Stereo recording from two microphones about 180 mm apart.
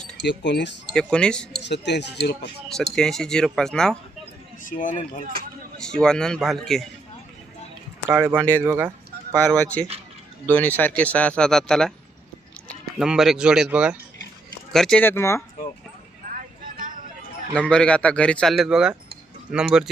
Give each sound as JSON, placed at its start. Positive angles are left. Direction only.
{"t": 0.2, "sound": "speech", "side_deg": 70}
{"t": 0.9, "sound": "speech", "side_deg": 5}
{"t": 1.6, "sound": "speech", "side_deg": 75}
{"t": 2.9, "sound": "speech", "side_deg": 5}
{"t": 4.6, "sound": "speech", "side_deg": 45}
{"t": 5.3, "sound": "a sound", "side_deg": -55}
{"t": 5.8, "sound": "speech", "side_deg": 5}
{"t": 8.1, "sound": "speech", "side_deg": -10}
{"t": 9.4, "sound": "speech", "side_deg": 5}
{"t": 16.6, "sound": "vehicle", "side_deg": -50}
{"t": 17.5, "sound": "speech", "side_deg": 5}